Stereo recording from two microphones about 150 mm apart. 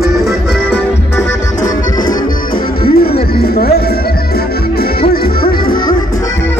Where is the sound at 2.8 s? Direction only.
85° left.